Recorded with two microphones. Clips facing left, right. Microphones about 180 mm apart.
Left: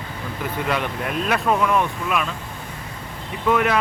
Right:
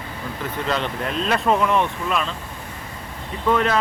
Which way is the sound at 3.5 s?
10° left (ahead or behind).